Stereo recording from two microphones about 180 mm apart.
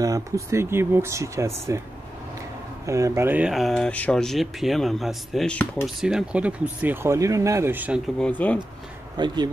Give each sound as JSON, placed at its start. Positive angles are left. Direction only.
{"t": 0.0, "sound": "speech", "side_deg": -15}
{"t": 2.9, "sound": "speech", "side_deg": -15}
{"t": 6.0, "sound": "speech", "side_deg": -5}
{"t": 8.2, "sound": "speech", "side_deg": 10}
{"t": 9.1, "sound": "speech", "side_deg": -25}